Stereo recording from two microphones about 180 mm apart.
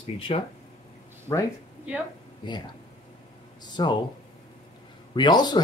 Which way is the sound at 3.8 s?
25° left (ahead or behind).